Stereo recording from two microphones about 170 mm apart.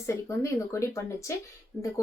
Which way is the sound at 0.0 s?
15° left (ahead or behind).